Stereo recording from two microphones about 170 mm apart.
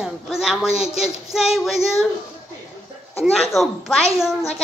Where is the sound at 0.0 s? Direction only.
5° right (ahead or behind).